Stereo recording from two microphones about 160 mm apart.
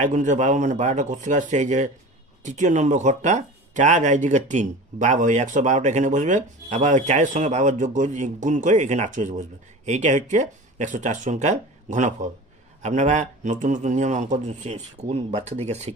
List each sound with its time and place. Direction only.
0.0 s speech: 50° right (ahead or behind)